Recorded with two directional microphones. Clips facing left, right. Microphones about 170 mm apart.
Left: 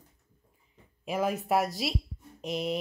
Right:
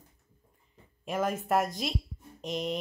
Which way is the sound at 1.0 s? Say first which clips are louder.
Left 1 dB; centre (ahead or behind).